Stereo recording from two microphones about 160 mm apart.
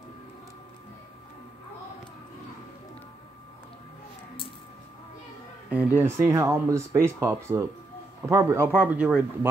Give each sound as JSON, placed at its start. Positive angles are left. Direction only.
{"t": 5.7, "sound": "speech", "side_deg": -10}